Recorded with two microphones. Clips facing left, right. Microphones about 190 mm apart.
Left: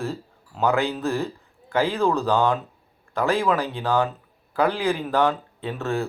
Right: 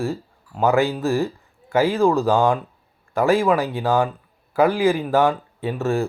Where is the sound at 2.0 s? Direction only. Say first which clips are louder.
Right 3 dB; 10° right (ahead or behind).